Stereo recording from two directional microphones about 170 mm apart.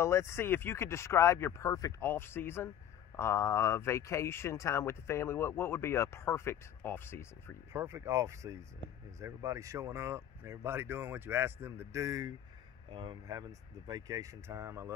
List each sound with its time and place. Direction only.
0.0 s speech: 15° left (ahead or behind)
7.7 s speech: 15° right (ahead or behind)